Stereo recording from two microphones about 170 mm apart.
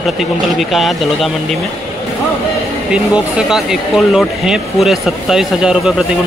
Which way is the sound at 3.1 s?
5° right (ahead or behind).